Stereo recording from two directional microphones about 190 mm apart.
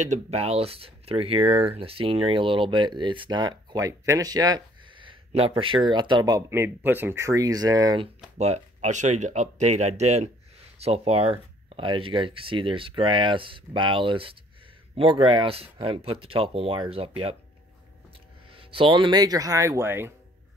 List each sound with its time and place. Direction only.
0.0 s speech: 35° right (ahead or behind); by 8.1 s 20° right (ahead or behind)
8.4 s speech: 35° right (ahead or behind)
18.6 s speech: 25° right (ahead or behind); by 20.1 s 10° right (ahead or behind)